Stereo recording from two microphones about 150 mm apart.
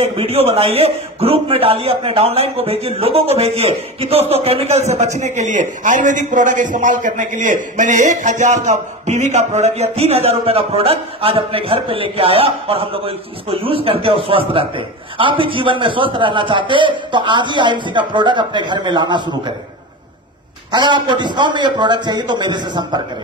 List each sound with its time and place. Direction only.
0.0 s a man's voice: 40° right (ahead or behind)
20.7 s a man's voice: 30° right (ahead or behind)